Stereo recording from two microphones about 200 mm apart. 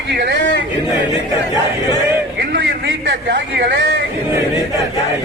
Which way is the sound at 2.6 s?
70° right (ahead or behind).